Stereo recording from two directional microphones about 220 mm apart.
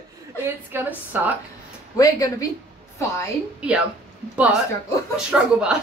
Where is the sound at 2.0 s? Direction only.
15° left (ahead or behind).